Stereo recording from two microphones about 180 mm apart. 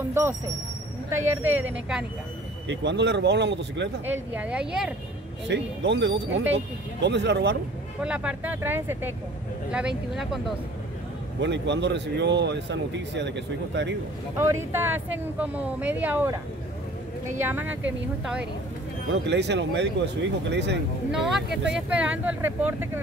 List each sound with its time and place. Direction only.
0.1 s speech: 15° right (ahead or behind)
2.7 s a man's voice: 80° right
4.0 s speech: 10° right (ahead or behind)
5.5 s a man's voice: 80° right
8.0 s speech: 5° right (ahead or behind)
11.4 s a man's voice: 80° right
14.4 s speech: 15° right (ahead or behind)
17.4 s speech: 10° right (ahead or behind)
19.2 s a man's voice: 70° right (ahead or behind)
21.1 s speech: centre (ahead or behind)